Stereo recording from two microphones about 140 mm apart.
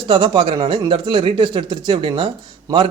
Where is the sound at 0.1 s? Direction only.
35° right (ahead or behind).